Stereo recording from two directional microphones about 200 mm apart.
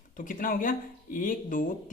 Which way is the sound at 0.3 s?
45° left (ahead or behind).